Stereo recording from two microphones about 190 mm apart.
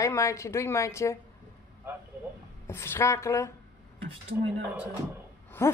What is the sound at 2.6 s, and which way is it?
Speech, 15° left (ahead or behind).